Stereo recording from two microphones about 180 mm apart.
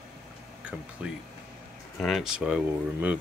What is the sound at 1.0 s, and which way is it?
Speech, 5° right (ahead or behind).